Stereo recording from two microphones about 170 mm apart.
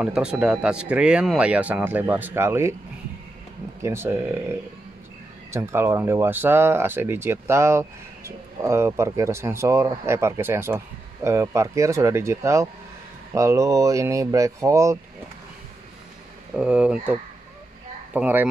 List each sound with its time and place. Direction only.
0.0 s speech: 5° right (ahead or behind)
3.8 s speech: 15° right (ahead or behind)
16.5 s speech: 5° right (ahead or behind)